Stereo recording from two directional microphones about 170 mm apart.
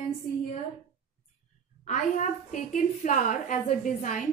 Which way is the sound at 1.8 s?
50° left (ahead or behind).